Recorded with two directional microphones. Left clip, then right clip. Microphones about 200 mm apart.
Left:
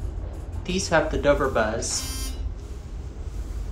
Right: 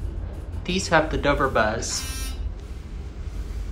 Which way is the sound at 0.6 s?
15° left (ahead or behind).